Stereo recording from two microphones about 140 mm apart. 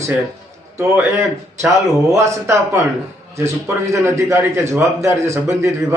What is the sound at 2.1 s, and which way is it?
A man's voice, 20° right (ahead or behind).